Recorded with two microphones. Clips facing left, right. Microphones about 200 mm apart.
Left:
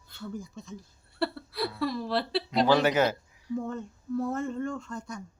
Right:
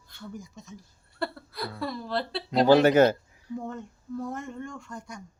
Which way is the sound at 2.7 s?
50° right (ahead or behind).